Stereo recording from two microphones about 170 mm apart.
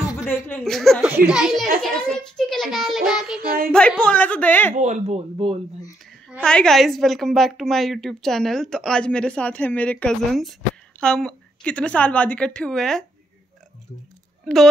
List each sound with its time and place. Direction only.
0.5 s a woman's voice: 5° left (ahead or behind)
4.7 s speech: 45° right (ahead or behind)
6.4 s a woman's voice: 5° left (ahead or behind)
14.4 s speech: centre (ahead or behind)